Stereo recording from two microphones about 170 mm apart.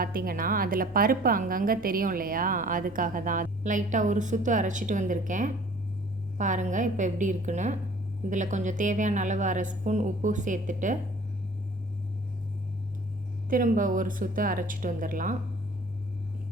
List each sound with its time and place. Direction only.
0.0 s a woman's voice: 60° right (ahead or behind)
13.5 s a woman's voice: 50° right (ahead or behind)